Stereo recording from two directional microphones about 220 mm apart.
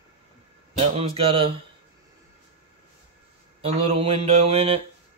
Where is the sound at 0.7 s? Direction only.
25° right (ahead or behind).